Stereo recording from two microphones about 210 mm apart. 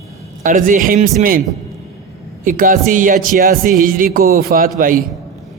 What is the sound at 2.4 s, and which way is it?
A man's voice, 40° right (ahead or behind).